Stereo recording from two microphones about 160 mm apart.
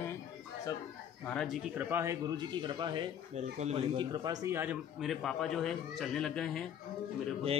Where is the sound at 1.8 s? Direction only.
15° right (ahead or behind).